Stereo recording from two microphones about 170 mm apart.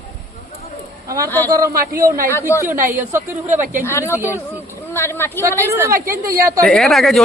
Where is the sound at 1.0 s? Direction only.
20° right (ahead or behind).